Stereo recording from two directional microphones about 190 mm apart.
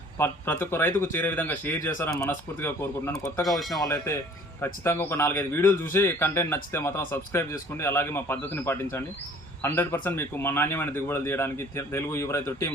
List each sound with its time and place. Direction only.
0.2 s speech: 10° left (ahead or behind)